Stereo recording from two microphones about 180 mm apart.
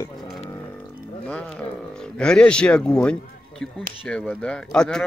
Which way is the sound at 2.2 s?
5° left (ahead or behind).